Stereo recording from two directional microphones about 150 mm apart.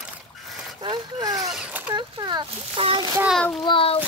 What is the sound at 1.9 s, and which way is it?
Speech, 30° right (ahead or behind).